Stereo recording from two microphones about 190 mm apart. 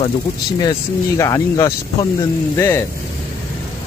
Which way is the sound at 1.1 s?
15° left (ahead or behind).